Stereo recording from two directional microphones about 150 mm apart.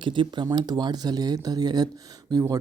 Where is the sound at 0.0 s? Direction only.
30° right (ahead or behind).